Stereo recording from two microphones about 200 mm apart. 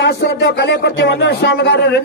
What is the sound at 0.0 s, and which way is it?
Speech, 55° left (ahead or behind).